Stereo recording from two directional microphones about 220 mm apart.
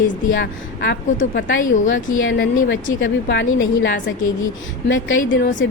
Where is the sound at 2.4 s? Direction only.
40° left (ahead or behind).